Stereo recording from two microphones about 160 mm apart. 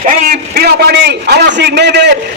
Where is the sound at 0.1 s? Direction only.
65° right (ahead or behind).